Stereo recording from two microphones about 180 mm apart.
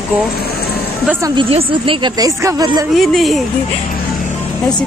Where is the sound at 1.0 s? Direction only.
15° right (ahead or behind).